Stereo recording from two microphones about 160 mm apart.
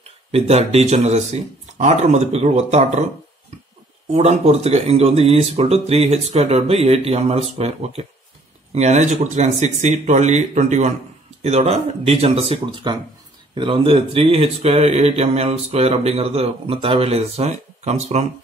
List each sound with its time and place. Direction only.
0.3 s speech: 40° right (ahead or behind)
4.1 s speech: 40° right (ahead or behind)
12.9 s speech: 25° right (ahead or behind); by 18.2 s 45° right (ahead or behind)